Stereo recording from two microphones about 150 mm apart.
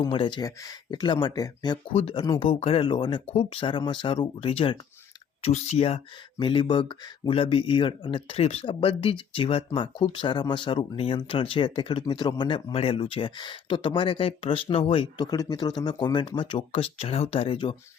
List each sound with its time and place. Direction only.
0.0 s speech: 35° left (ahead or behind)
1.9 s speech: 40° left (ahead or behind)
5.4 s speech: 45° left (ahead or behind)